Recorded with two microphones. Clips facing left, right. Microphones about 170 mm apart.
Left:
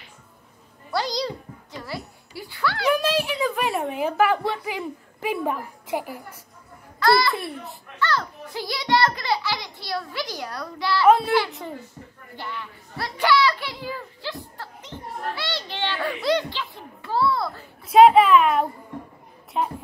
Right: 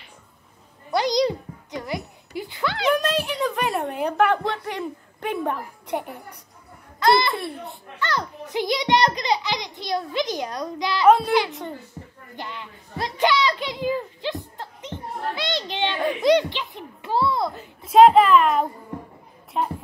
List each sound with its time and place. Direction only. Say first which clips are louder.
0.9 s a sound: right 5 dB; 20° right (ahead or behind)
2.9 s a child's voice: even; centre (ahead or behind)
7.0 s a child's voice: right 1 dB; 20° right (ahead or behind)
7.3 s a child's voice: right 1 dB; centre (ahead or behind)
8.0 s a child's voice: left 1 dB; 20° right (ahead or behind)
11.1 s a child's voice: right 1 dB; centre (ahead or behind)
12.4 s a sound: left 1 dB; 20° right (ahead or behind)
17.9 s a child's voice: even; centre (ahead or behind)